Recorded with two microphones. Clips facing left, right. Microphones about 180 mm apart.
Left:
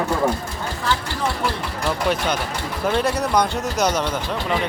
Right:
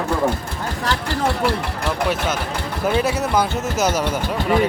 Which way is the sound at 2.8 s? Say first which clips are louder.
Right 1 dB; 5° right (ahead or behind).